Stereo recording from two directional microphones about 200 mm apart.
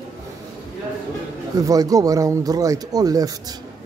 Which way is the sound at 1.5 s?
20° right (ahead or behind).